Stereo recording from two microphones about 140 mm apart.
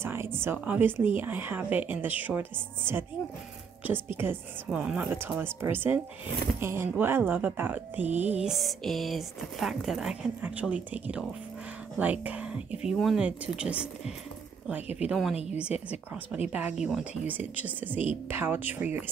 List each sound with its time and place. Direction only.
0.0 s speech: 15° right (ahead or behind)
8.4 s speech: centre (ahead or behind)
16.5 s speech: 5° right (ahead or behind)